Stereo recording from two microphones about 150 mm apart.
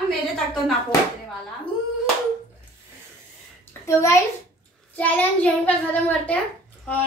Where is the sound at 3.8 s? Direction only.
20° left (ahead or behind).